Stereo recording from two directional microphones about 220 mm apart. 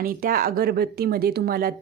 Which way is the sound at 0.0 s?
40° right (ahead or behind).